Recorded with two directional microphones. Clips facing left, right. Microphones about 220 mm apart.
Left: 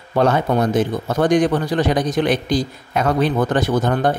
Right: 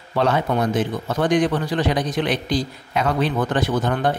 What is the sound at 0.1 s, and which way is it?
A man's voice, 45° left (ahead or behind).